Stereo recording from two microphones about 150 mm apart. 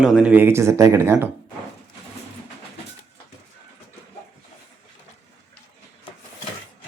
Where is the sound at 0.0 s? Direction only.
5° right (ahead or behind).